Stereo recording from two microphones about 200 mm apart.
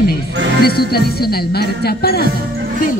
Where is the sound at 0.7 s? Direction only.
50° left (ahead or behind).